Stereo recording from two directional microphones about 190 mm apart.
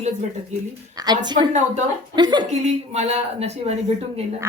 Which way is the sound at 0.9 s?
20° right (ahead or behind).